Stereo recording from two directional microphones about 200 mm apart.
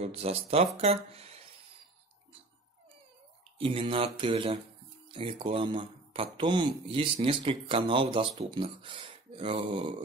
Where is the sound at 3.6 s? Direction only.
25° right (ahead or behind).